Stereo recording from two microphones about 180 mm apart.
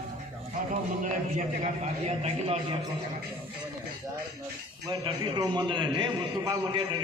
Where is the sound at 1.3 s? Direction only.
45° right (ahead or behind).